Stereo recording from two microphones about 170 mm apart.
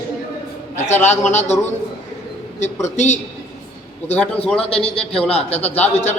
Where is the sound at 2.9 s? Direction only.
45° left (ahead or behind).